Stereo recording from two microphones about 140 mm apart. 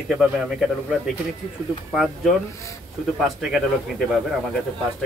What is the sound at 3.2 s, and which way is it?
Speech, centre (ahead or behind).